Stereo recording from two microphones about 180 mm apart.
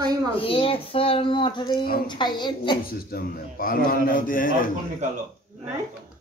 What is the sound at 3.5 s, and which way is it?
A man's voice, 55° left (ahead or behind).